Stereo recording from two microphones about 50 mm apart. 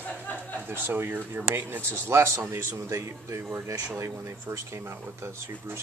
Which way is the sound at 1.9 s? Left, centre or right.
Right.